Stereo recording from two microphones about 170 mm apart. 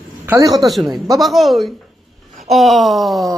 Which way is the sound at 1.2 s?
Centre (ahead or behind).